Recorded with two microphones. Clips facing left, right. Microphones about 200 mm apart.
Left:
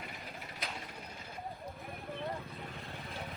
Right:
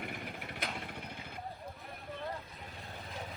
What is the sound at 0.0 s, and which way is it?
Vehicle, 55° right (ahead or behind).